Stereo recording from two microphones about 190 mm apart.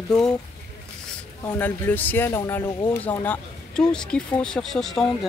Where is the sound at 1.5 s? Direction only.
10° left (ahead or behind).